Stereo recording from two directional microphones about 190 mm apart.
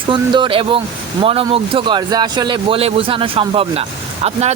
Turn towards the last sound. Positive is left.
turn(degrees=-35)  # may be behind; listen again after turning